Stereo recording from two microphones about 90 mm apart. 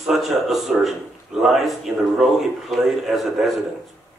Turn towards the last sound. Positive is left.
turn(degrees=0)  # may be behind; listen again after turning